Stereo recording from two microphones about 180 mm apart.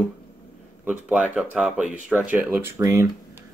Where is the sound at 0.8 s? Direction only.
5° right (ahead or behind).